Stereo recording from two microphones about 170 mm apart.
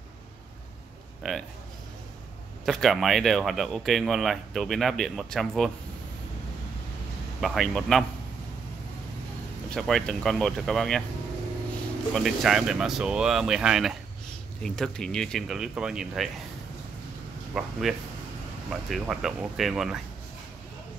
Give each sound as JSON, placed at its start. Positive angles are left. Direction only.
{"t": 1.2, "sound": "speech", "side_deg": 0}
{"t": 2.6, "sound": "speech", "side_deg": 0}
{"t": 7.3, "sound": "speech", "side_deg": 0}
{"t": 9.7, "sound": "speech", "side_deg": 0}
{"t": 12.1, "sound": "speech", "side_deg": 0}
{"t": 17.6, "sound": "speech", "side_deg": 0}